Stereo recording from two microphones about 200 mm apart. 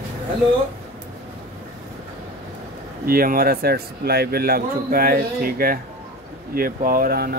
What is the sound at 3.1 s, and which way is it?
Speech, 45° right (ahead or behind).